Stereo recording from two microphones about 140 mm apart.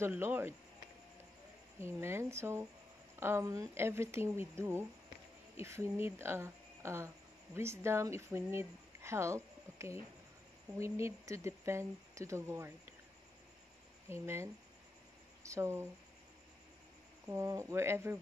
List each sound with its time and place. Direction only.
0.0 s speech: 15° right (ahead or behind)
1.8 s a woman's voice: 20° right (ahead or behind)
14.0 s speech: 20° right (ahead or behind)
17.3 s speech: 20° right (ahead or behind)